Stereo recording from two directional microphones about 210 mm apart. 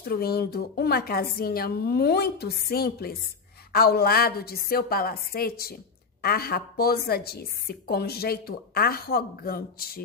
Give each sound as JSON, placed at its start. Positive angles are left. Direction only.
{"t": 0.0, "sound": "a woman's voice", "side_deg": 45}